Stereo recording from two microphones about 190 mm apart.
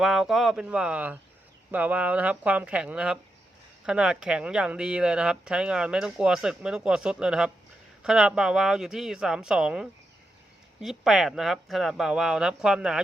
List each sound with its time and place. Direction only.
0.0 s speech: centre (ahead or behind)